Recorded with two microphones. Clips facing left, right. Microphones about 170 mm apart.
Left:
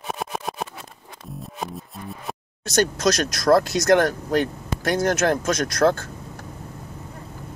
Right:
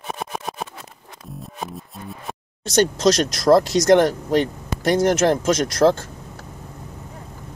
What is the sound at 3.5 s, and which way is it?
Speech, 25° right (ahead or behind).